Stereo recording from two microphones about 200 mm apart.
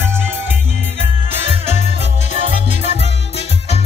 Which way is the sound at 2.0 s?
35° left (ahead or behind).